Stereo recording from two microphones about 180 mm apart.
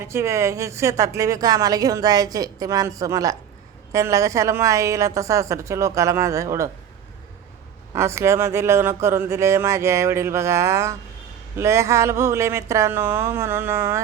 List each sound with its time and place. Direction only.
0.0 s a woman's voice: 15° right (ahead or behind)
7.9 s speech: 15° right (ahead or behind)